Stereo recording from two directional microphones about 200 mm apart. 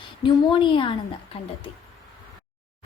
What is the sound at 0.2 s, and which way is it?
Speech, 25° left (ahead or behind).